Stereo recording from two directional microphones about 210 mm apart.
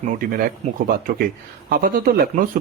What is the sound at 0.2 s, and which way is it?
Speech, 40° right (ahead or behind).